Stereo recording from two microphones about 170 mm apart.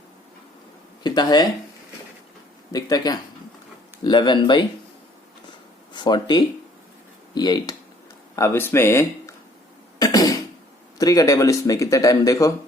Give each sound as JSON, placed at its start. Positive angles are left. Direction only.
{"t": 1.0, "sound": "speech", "side_deg": 25}
{"t": 2.7, "sound": "speech", "side_deg": 20}
{"t": 5.9, "sound": "speech", "side_deg": 25}
{"t": 8.4, "sound": "speech", "side_deg": 15}
{"t": 10.0, "sound": "cough", "side_deg": 20}
{"t": 10.9, "sound": "speech", "side_deg": 20}